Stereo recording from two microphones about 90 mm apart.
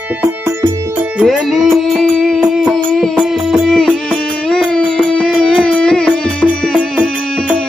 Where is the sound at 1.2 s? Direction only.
5° right (ahead or behind).